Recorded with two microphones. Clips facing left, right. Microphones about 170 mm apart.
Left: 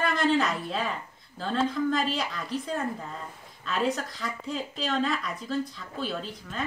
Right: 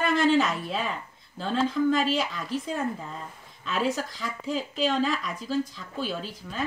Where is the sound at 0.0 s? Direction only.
Centre (ahead or behind).